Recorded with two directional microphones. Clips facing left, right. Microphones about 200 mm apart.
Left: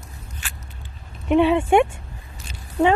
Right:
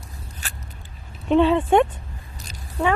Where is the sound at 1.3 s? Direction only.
15° left (ahead or behind).